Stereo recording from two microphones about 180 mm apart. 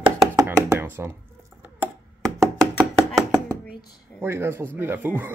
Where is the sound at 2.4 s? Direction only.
5° right (ahead or behind).